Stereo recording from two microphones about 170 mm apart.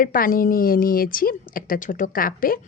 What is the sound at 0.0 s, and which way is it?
Speech, 55° left (ahead or behind).